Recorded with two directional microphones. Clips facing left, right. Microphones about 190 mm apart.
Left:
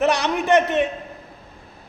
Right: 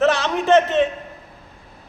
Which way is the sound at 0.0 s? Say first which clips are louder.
Right 1 dB; 15° left (ahead or behind).